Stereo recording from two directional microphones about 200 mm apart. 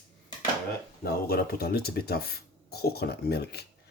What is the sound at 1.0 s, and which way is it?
Speech, 50° left (ahead or behind).